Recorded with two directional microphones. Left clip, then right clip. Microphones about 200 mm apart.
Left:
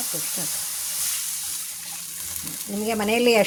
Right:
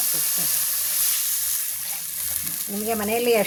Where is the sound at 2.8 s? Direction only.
30° left (ahead or behind).